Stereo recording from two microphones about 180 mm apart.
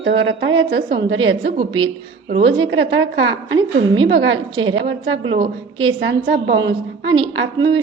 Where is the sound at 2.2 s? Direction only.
70° right (ahead or behind).